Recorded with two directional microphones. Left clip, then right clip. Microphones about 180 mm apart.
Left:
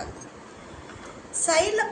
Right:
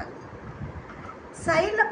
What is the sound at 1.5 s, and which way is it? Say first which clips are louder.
Speech: even; 40° left (ahead or behind).